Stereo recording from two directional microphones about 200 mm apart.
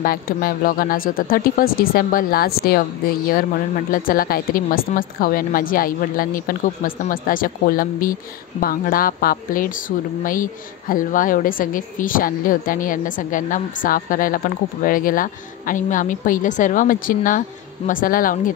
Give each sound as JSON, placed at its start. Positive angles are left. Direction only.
{"t": 0.0, "sound": "a woman's voice", "side_deg": 45}
{"t": 3.9, "sound": "a woman's voice", "side_deg": 45}